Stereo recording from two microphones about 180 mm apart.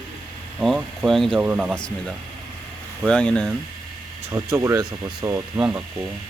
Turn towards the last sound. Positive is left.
turn(degrees=-15)  # may be behind; listen again after turning